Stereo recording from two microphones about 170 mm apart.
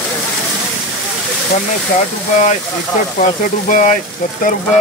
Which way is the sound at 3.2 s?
50° left (ahead or behind).